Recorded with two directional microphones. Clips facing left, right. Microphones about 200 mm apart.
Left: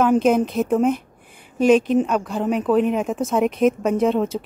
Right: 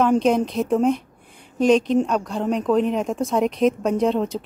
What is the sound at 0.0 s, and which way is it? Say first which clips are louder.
Speech: left 1 dB; 5° left (ahead or behind).